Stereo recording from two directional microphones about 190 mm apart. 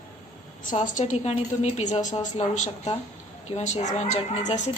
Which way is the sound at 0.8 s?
40° left (ahead or behind).